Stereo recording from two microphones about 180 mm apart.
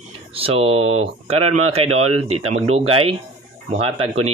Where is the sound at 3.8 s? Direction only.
30° right (ahead or behind).